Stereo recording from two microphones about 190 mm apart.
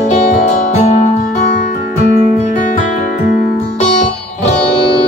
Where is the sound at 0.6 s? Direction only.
35° left (ahead or behind).